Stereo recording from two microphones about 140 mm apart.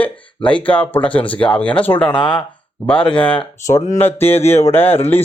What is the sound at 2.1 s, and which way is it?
Speech, 35° left (ahead or behind).